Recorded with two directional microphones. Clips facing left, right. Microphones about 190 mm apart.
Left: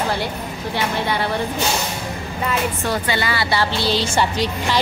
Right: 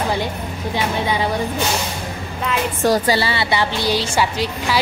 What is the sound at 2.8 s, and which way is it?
A woman's voice, 35° right (ahead or behind).